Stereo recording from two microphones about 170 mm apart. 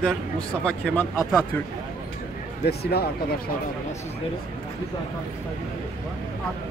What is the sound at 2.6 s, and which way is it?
Speech, 70° left (ahead or behind).